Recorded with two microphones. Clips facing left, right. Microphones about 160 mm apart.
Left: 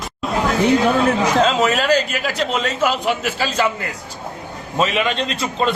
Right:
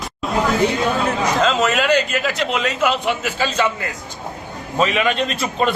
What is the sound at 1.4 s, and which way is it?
A man's voice, 35° left (ahead or behind).